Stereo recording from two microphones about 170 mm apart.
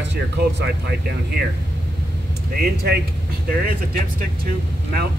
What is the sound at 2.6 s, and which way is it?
Speech, 65° right (ahead or behind).